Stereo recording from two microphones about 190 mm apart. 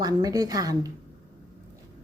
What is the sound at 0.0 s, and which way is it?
Speech, 20° right (ahead or behind).